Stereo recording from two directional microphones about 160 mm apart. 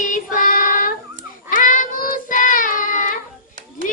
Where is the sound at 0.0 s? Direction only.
55° left (ahead or behind).